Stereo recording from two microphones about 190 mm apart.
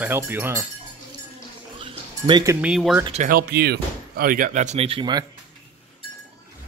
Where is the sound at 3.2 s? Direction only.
55° right (ahead or behind); by 5.2 s 25° right (ahead or behind).